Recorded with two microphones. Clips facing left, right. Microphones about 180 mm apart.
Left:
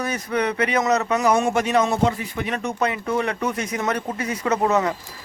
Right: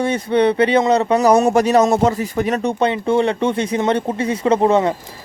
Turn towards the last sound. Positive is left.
turn(degrees=-30)  # may be behind; listen again after turning